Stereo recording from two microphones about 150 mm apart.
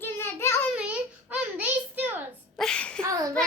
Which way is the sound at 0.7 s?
10° right (ahead or behind).